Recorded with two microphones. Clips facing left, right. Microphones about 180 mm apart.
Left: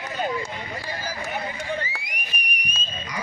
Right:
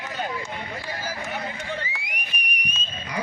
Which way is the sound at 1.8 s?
40° left (ahead or behind).